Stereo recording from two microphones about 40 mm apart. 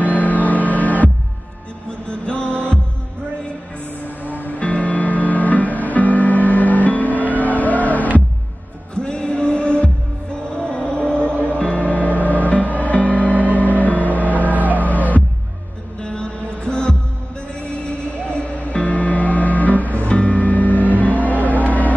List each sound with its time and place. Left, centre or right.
0.0 s music: left
1.9 s music: left
4.5 s music: left
8.9 s heart murmur: left
10.5 s music: left
16.0 s music: left
18.2 s music: left
18.6 s music: left